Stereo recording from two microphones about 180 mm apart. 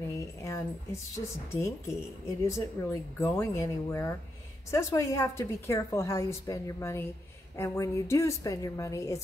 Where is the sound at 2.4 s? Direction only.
15° left (ahead or behind).